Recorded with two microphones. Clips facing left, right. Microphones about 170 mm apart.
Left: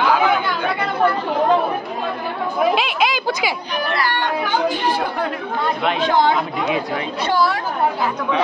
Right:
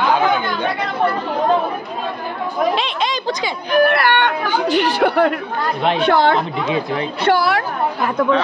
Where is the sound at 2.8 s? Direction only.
5° left (ahead or behind).